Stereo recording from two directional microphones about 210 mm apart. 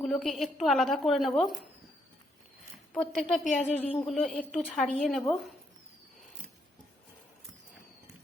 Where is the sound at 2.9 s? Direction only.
5° left (ahead or behind).